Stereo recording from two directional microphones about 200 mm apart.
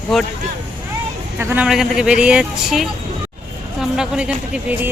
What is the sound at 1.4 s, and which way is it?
Speech, 10° right (ahead or behind).